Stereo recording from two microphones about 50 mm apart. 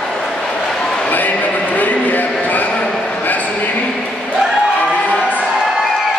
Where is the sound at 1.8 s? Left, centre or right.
Left.